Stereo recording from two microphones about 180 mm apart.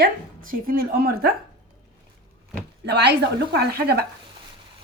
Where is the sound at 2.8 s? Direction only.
65° right (ahead or behind).